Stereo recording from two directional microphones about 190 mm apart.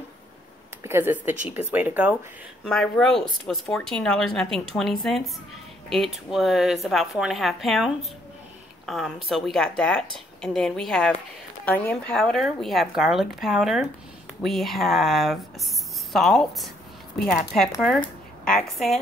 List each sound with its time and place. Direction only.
0.8 s speech: 10° right (ahead or behind)
2.6 s speech: centre (ahead or behind)